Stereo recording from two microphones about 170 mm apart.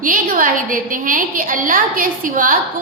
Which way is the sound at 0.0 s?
55° right (ahead or behind).